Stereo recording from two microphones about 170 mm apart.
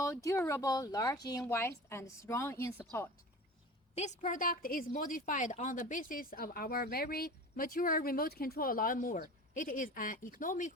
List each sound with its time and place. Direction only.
0.0 s a woman's voice: 20° left (ahead or behind)
3.9 s a woman's voice: 45° left (ahead or behind)